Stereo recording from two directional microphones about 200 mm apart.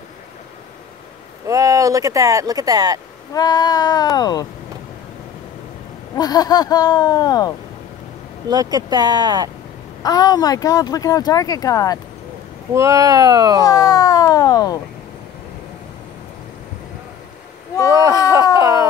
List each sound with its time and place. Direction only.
1.5 s speech: 15° right (ahead or behind)
3.3 s speech: 20° left (ahead or behind)
6.1 s speech: 20° left (ahead or behind)
8.5 s speech: 20° right (ahead or behind)
10.0 s speech: 20° left (ahead or behind)
12.7 s speech: 15° right (ahead or behind)
13.7 s speech: 20° left (ahead or behind)
18.3 s speech: 20° right (ahead or behind)